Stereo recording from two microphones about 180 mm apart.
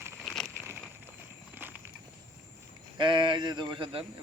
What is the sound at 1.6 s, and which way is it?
Walk, 10° right (ahead or behind).